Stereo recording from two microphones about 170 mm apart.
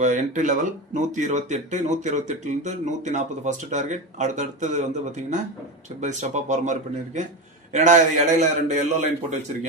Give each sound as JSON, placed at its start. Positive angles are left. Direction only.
{"t": 0.0, "sound": "speech", "side_deg": -45}